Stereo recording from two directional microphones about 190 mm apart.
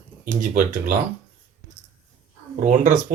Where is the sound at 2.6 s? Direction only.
40° right (ahead or behind).